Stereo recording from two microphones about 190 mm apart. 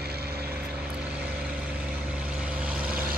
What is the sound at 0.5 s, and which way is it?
Vehicle, 5° right (ahead or behind).